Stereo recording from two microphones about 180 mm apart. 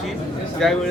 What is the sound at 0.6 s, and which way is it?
Speech, centre (ahead or behind).